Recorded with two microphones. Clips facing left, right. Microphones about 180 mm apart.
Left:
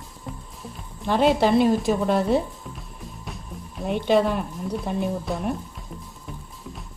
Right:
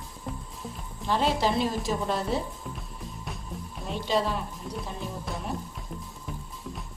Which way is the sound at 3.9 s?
60° left (ahead or behind).